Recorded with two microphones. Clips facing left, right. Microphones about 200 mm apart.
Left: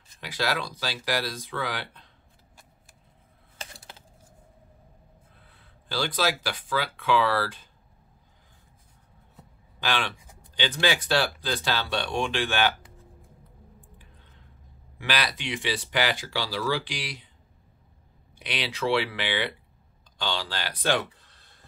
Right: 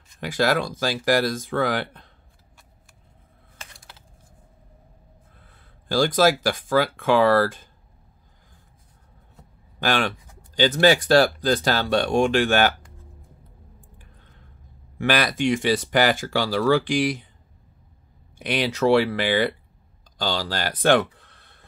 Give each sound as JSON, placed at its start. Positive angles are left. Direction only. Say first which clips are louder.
{"t": 0.2, "sound": "speech", "louder": "right 8 dB", "side_deg": -50}
{"t": 3.6, "sound": "computer keyboard", "louder": "left 3 dB", "side_deg": 30}
{"t": 5.4, "sound": "speech", "louder": "right 2 dB", "side_deg": -45}
{"t": 9.8, "sound": "speech", "louder": "right 6 dB", "side_deg": -45}
{"t": 15.0, "sound": "speech", "louder": "right 8 dB", "side_deg": -50}
{"t": 18.4, "sound": "speech", "louder": "right 8 dB", "side_deg": -45}